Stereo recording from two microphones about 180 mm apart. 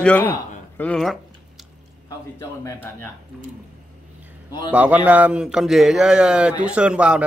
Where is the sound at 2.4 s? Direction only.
15° left (ahead or behind).